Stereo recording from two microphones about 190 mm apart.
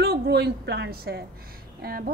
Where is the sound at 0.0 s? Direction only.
60° right (ahead or behind).